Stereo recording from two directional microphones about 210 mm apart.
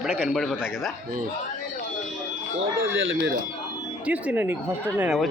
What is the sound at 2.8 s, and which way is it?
Speech, 65° right (ahead or behind).